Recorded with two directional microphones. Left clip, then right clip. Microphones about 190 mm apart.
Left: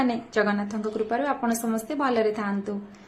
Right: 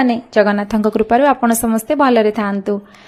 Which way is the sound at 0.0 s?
35° right (ahead or behind).